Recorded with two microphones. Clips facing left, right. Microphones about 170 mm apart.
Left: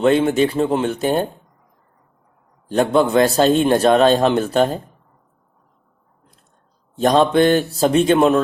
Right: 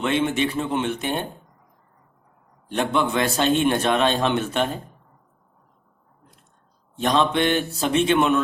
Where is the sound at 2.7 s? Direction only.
35° left (ahead or behind).